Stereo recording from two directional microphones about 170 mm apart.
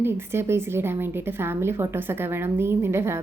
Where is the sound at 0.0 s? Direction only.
15° right (ahead or behind).